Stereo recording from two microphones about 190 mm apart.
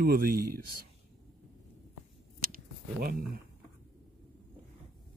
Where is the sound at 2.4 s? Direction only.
50° right (ahead or behind).